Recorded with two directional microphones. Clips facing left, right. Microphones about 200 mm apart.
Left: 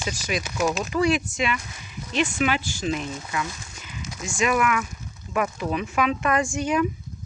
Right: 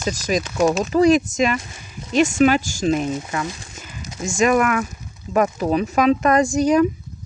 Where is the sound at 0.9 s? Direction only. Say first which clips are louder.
Right 8 dB; 40° right (ahead or behind).